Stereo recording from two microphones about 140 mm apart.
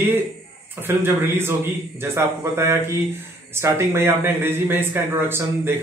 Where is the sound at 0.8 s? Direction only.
15° right (ahead or behind).